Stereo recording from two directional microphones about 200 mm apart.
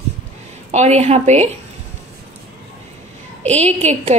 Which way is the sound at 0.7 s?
35° right (ahead or behind).